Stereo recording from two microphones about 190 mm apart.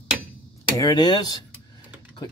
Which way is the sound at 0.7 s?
20° left (ahead or behind).